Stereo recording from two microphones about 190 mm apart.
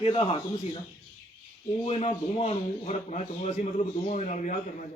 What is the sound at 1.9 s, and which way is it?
A man's voice, 30° left (ahead or behind).